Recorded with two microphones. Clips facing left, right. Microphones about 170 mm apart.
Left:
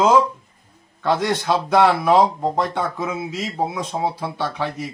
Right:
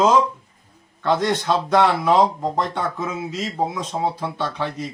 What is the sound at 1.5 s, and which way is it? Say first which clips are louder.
Speech: left 2 dB; 10° left (ahead or behind).